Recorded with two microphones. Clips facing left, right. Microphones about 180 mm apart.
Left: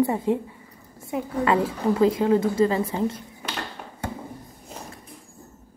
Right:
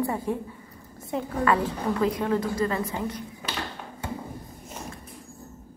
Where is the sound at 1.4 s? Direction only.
25° left (ahead or behind).